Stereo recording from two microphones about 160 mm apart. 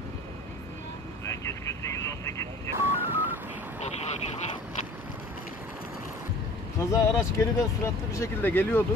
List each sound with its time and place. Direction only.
1.2 s vehicle: 15° left (ahead or behind)
2.7 s telephone dialing: 15° right (ahead or behind)
6.8 s speech: 20° left (ahead or behind)